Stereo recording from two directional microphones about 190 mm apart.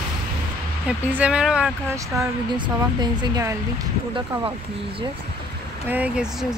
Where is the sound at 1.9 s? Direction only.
15° right (ahead or behind).